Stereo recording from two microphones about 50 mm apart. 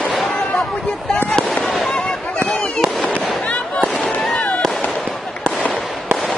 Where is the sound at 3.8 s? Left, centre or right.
Centre.